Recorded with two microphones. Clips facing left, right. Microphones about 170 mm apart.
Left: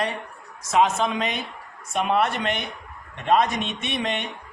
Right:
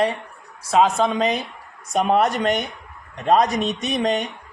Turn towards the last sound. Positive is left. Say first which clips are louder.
# right 6 dB
turn(degrees=-40)  # may be behind; listen again after turning